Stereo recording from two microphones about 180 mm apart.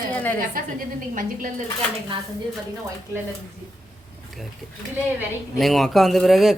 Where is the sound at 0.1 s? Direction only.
10° left (ahead or behind).